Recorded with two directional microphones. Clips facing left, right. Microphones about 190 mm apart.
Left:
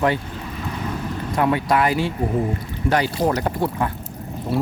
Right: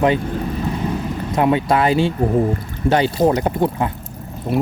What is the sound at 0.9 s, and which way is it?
Vehicle, 20° right (ahead or behind).